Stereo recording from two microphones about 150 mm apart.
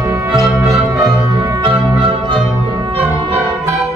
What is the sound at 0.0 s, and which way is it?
Music, 15° right (ahead or behind).